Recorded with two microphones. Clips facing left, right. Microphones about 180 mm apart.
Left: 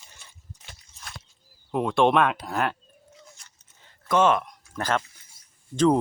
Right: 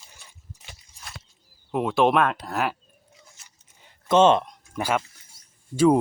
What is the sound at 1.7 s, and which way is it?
Speech, 5° right (ahead or behind).